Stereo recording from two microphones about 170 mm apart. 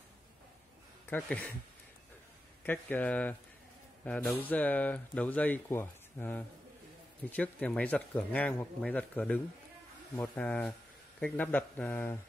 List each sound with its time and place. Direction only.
1.1 s speech: 10° left (ahead or behind)
2.6 s speech: 10° left (ahead or behind)